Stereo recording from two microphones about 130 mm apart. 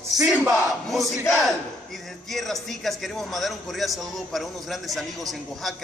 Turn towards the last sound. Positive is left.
turn(degrees=0)  # may be behind; listen again after turning